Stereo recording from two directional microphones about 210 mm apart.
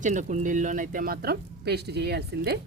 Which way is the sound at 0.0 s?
35° right (ahead or behind).